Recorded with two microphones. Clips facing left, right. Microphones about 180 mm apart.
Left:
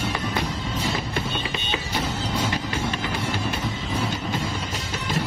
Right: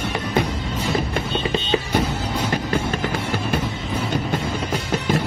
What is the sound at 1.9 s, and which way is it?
Music, 55° right (ahead or behind).